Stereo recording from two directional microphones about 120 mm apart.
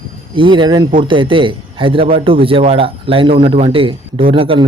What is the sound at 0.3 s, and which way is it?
A man's voice, 45° right (ahead or behind).